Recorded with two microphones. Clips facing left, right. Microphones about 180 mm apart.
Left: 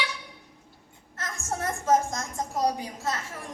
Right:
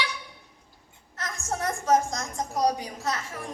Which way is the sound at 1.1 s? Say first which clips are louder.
Right 1 dB; 15° right (ahead or behind).